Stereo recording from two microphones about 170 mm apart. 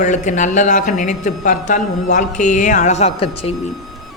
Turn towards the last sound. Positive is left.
turn(degrees=35)  # may be behind; listen again after turning